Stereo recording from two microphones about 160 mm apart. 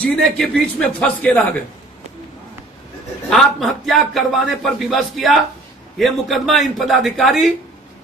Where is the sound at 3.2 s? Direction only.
Centre (ahead or behind).